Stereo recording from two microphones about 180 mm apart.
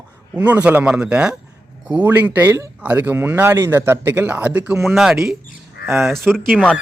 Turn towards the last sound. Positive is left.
turn(degrees=0)  # may be behind; listen again after turning